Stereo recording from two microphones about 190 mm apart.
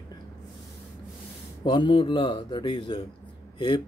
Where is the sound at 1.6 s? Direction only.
25° left (ahead or behind).